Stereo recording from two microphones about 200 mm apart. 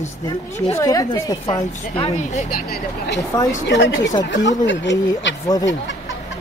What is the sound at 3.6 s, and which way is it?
Speech, 60° left (ahead or behind).